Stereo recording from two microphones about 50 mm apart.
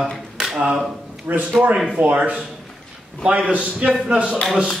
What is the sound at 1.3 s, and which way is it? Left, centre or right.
Speech, right.